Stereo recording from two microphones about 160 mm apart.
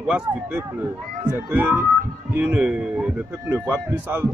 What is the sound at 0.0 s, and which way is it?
A man's voice, 5° right (ahead or behind).